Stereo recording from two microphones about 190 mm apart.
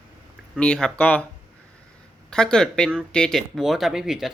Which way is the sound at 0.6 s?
5° left (ahead or behind).